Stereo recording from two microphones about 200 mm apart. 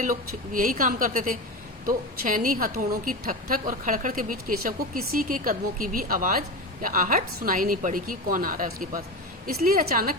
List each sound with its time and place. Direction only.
0.0 s a woman's voice: 45° right (ahead or behind)